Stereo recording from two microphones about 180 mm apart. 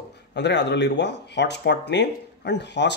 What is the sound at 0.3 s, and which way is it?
Speech, 70° left (ahead or behind).